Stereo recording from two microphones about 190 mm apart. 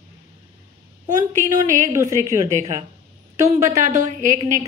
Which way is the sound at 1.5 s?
15° right (ahead or behind).